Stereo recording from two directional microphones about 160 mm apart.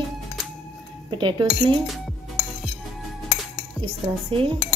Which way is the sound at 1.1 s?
30° right (ahead or behind).